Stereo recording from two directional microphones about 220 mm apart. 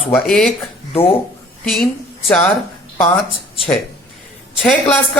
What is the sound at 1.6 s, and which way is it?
Speech, centre (ahead or behind).